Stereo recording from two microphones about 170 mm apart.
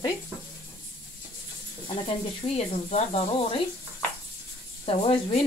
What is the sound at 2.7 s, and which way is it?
Speech, 40° left (ahead or behind).